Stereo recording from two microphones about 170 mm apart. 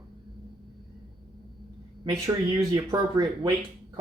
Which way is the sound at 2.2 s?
20° right (ahead or behind).